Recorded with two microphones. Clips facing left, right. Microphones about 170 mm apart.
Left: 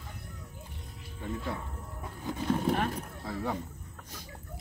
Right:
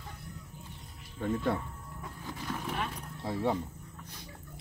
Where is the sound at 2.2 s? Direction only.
30° left (ahead or behind).